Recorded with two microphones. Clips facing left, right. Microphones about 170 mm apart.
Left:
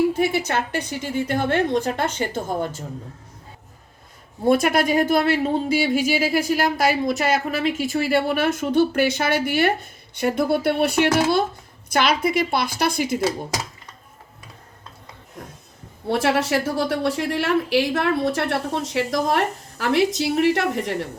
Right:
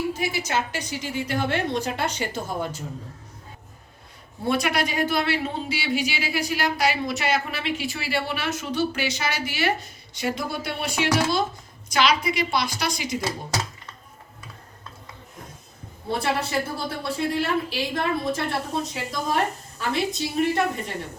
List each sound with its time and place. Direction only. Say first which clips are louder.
0.1 s speech: left 5 dB; 60° left (ahead or behind)
4.4 s speech: left 6 dB; 50° left (ahead or behind)
16.0 s a woman's voice: left 6 dB; 85° left